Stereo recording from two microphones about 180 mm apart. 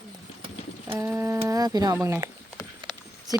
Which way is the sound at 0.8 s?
15° right (ahead or behind).